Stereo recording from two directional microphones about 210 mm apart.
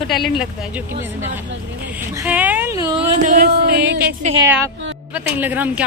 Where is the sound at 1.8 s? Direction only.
10° right (ahead or behind).